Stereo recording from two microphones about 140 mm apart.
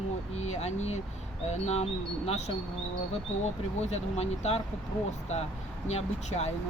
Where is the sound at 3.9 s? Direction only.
50° left (ahead or behind).